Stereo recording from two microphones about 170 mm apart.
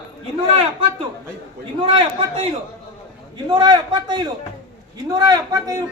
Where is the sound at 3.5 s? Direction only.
25° right (ahead or behind).